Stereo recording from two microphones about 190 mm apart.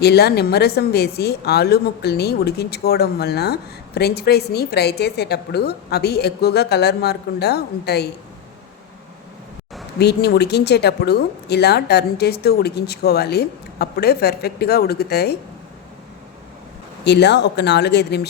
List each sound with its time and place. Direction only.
0.0 s a woman's voice: 60° left (ahead or behind)
10.0 s a woman's voice: 60° left (ahead or behind)
17.0 s a woman's voice: 65° left (ahead or behind)